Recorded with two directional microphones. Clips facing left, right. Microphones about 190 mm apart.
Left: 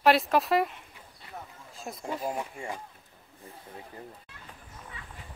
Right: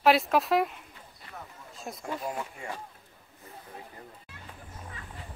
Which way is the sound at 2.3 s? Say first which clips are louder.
Left 2 dB; 15° left (ahead or behind).